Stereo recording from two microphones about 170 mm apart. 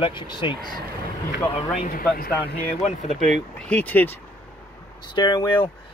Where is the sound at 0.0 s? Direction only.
30° left (ahead or behind).